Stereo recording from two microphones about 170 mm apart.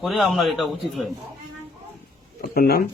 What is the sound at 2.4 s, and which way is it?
Speech, 65° left (ahead or behind).